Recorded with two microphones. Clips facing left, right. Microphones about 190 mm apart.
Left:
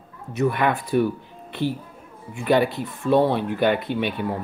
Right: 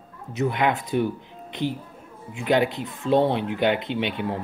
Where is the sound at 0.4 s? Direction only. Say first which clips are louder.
Left 2 dB; 20° right (ahead or behind).